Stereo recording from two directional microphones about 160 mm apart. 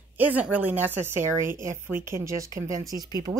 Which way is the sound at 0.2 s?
10° right (ahead or behind).